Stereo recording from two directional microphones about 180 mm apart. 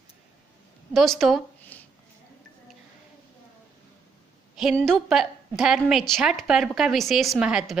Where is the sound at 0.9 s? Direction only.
Centre (ahead or behind).